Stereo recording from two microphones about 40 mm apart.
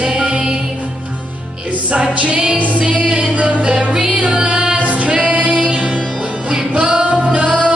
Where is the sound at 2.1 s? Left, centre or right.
Right.